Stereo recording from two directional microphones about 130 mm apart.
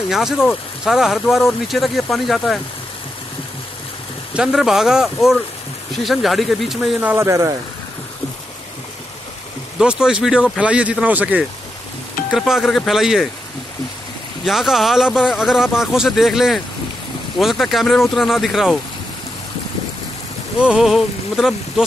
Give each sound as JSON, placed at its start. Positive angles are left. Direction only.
{"t": 0.1, "sound": "speech", "side_deg": -5}
{"t": 4.3, "sound": "speech", "side_deg": -5}
{"t": 7.0, "sound": "speech", "side_deg": -10}
{"t": 7.2, "sound": "speech", "side_deg": -25}
{"t": 9.8, "sound": "speech", "side_deg": -5}
{"t": 14.4, "sound": "speech", "side_deg": 0}
{"t": 20.5, "sound": "speech", "side_deg": -5}